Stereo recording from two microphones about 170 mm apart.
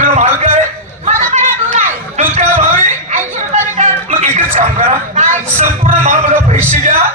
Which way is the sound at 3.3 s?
45° right (ahead or behind).